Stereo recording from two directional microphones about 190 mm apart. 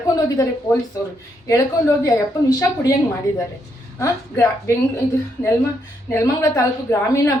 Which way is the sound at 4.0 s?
15° left (ahead or behind).